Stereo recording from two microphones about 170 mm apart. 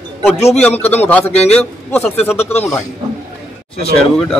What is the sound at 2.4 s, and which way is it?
Speech, 40° left (ahead or behind).